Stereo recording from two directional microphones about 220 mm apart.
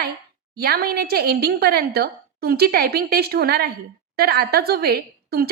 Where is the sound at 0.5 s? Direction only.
45° right (ahead or behind).